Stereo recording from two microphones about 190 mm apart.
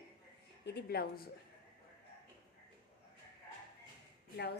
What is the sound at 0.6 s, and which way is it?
Speech, 60° left (ahead or behind).